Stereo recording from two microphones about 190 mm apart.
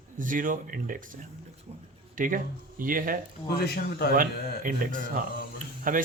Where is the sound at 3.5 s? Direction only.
60° left (ahead or behind).